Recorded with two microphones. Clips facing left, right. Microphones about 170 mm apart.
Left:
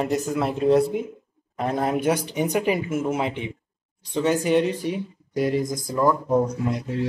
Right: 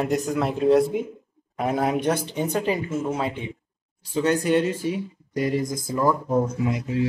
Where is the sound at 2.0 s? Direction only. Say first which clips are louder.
Left 1 dB; 10° left (ahead or behind).